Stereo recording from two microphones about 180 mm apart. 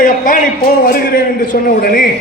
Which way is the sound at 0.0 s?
50° left (ahead or behind).